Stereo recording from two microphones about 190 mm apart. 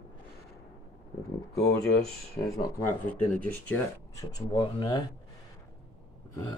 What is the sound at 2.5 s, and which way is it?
Speech, 15° left (ahead or behind).